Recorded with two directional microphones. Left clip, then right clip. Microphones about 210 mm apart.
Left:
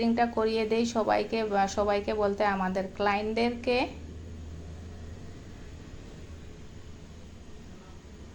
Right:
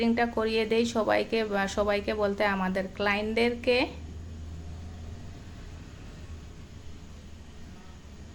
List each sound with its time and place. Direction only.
0.0 s a woman's voice: 15° right (ahead or behind)